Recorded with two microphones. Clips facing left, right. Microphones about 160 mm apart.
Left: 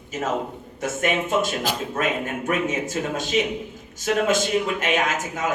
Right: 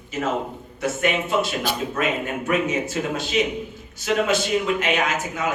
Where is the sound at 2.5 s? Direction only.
45° left (ahead or behind).